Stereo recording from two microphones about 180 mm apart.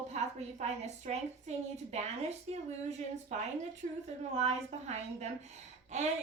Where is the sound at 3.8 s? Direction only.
45° right (ahead or behind).